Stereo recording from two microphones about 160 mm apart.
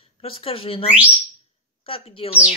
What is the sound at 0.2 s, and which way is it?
Speech, 35° left (ahead or behind).